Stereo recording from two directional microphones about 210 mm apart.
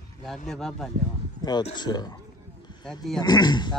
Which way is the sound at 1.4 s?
20° left (ahead or behind).